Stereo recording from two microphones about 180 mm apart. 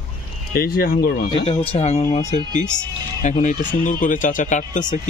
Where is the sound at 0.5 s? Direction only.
55° left (ahead or behind).